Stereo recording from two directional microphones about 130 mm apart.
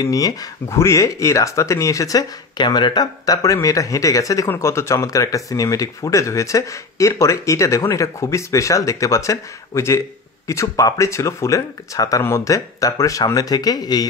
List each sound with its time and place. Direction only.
0.0 s speech: 25° left (ahead or behind)